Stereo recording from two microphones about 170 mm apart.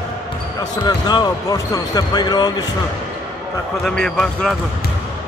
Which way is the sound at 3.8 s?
Centre (ahead or behind).